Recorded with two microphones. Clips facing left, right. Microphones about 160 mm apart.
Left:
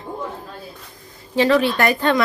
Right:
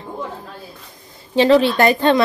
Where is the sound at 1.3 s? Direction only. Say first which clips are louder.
Right 4 dB; 25° right (ahead or behind).